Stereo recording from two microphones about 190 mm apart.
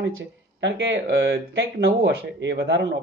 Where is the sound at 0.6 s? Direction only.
75° right (ahead or behind).